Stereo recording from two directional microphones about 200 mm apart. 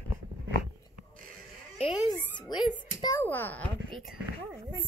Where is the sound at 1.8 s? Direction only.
25° left (ahead or behind).